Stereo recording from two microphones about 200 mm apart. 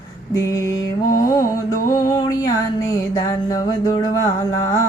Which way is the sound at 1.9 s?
20° left (ahead or behind).